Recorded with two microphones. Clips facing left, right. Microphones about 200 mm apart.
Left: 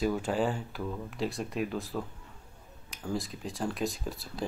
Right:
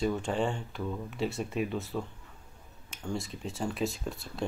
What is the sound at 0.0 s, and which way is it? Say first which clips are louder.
Speech: left 1 dB; 5° left (ahead or behind).